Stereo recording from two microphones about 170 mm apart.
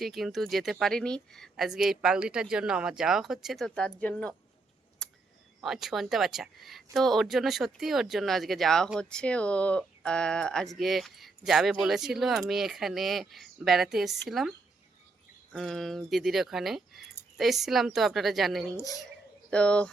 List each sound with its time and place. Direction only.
0.0 s speech: centre (ahead or behind)
5.0 s a sound: 5° left (ahead or behind)
5.6 s speech: centre (ahead or behind)
15.5 s speech: centre (ahead or behind)
18.8 s speech: 20° left (ahead or behind)
19.5 s speech: 5° left (ahead or behind)